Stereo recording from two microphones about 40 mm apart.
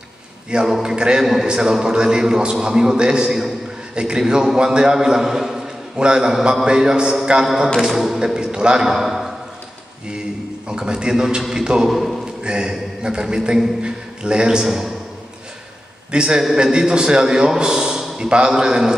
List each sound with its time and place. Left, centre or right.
0.5 s a man's voice: right
1.2 s a man's voice: centre
5.9 s a man's voice: centre
10.7 s a man's voice: centre
11.9 s a man's voice: centre
12.4 s a man's voice: right
16.1 s a man's voice: right